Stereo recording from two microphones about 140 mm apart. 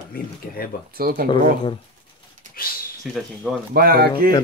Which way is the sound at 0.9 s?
90° right.